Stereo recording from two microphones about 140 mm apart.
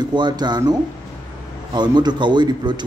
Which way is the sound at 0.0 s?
30° right (ahead or behind).